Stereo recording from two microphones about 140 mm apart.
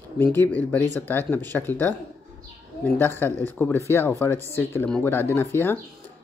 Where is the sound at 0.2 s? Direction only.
15° left (ahead or behind).